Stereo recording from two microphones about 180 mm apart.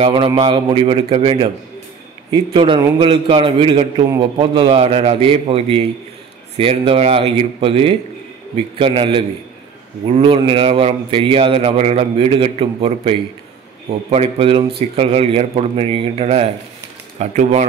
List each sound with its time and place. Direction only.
0.0 s a man's voice: 30° right (ahead or behind)